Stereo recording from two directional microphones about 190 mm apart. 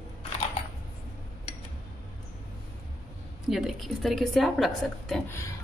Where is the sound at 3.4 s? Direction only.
Centre (ahead or behind).